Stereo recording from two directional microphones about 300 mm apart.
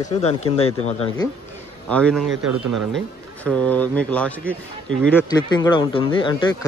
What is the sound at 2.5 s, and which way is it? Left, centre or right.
Speech, right.